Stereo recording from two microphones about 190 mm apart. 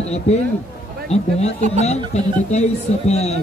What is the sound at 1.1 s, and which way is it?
A man's voice, 30° left (ahead or behind).